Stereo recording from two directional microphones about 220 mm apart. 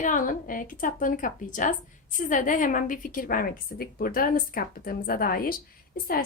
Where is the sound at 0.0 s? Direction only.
35° left (ahead or behind).